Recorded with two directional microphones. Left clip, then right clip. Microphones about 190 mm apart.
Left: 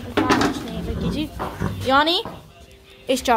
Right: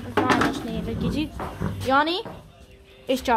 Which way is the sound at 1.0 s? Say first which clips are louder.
Left 1 dB; 25° right (ahead or behind).